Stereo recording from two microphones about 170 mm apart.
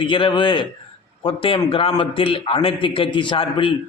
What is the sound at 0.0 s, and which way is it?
A man's voice, 30° left (ahead or behind).